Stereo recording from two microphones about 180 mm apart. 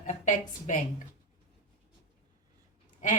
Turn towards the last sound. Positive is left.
turn(degrees=45)  # may be behind; listen again after turning